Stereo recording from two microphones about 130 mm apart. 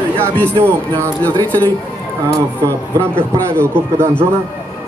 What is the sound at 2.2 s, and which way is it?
A man's voice, 20° right (ahead or behind).